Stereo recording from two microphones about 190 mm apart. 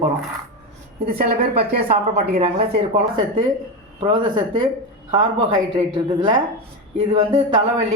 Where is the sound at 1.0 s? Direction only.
50° right (ahead or behind).